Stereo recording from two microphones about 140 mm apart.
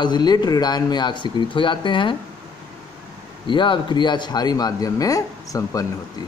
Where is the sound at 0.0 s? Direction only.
30° left (ahead or behind).